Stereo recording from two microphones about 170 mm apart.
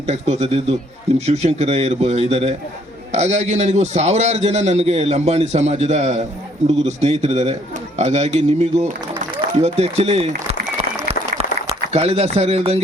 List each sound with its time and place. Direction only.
0.1 s a man's voice: 40° right (ahead or behind)
11.9 s a man's voice: 40° right (ahead or behind)